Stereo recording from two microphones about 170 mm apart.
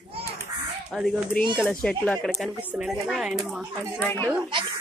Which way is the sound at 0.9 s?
Centre (ahead or behind).